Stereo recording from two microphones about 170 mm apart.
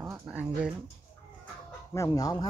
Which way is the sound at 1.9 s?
20° left (ahead or behind).